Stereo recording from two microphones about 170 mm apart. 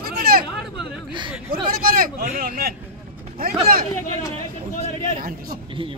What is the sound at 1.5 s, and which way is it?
Speech, 60° right (ahead or behind).